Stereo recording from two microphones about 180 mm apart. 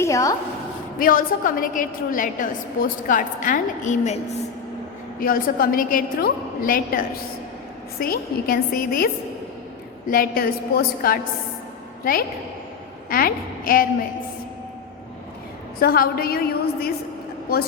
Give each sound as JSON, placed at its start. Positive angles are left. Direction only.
{"t": 0.0, "sound": "a woman's voice", "side_deg": 15}
{"t": 0.9, "sound": "a woman's voice", "side_deg": 50}
{"t": 5.2, "sound": "a woman's voice", "side_deg": 50}
{"t": 10.1, "sound": "a woman's voice", "side_deg": 55}
{"t": 13.1, "sound": "a woman's voice", "side_deg": 55}
{"t": 15.8, "sound": "a woman's voice", "side_deg": 55}